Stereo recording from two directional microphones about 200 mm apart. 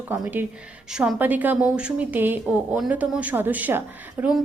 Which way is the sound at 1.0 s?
10° right (ahead or behind).